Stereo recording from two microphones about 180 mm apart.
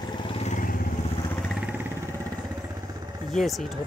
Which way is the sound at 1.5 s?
5° right (ahead or behind).